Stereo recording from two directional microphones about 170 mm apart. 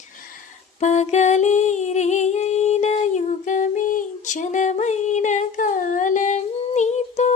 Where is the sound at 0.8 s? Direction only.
45° left (ahead or behind).